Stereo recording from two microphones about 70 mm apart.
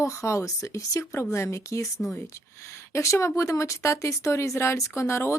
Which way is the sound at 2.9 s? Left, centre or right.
Left.